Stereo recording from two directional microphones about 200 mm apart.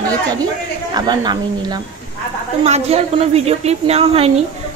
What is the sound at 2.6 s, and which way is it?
A woman's voice, 30° right (ahead or behind).